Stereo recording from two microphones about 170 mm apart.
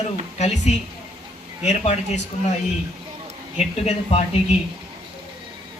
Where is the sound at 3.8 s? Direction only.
35° left (ahead or behind).